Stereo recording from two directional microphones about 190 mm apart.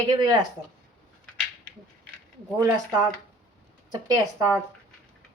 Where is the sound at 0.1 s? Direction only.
20° right (ahead or behind).